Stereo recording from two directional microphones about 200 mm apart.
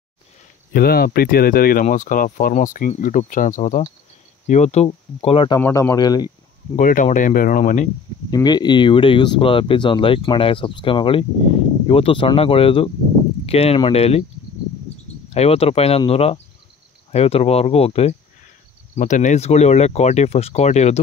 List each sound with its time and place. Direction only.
0.7 s speech: 50° left (ahead or behind); by 5.6 s 25° left (ahead or behind)
5.6 s speech: 15° left (ahead or behind)
6.8 s speech: 40° left (ahead or behind)
8.3 s speech: 20° left (ahead or behind)
15.2 s speech: 30° left (ahead or behind)